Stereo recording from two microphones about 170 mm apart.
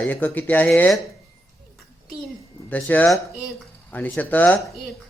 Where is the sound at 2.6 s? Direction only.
10° left (ahead or behind).